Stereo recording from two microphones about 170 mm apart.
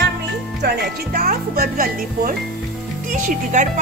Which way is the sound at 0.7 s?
70° right (ahead or behind).